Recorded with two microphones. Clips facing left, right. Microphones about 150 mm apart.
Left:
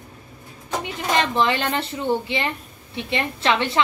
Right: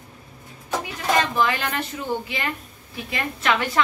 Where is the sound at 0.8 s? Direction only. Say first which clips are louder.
Even; 25° left (ahead or behind).